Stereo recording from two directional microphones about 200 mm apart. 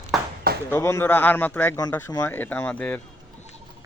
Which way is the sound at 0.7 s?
15° left (ahead or behind).